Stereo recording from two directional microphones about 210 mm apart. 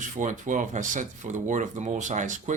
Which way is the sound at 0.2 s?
35° right (ahead or behind).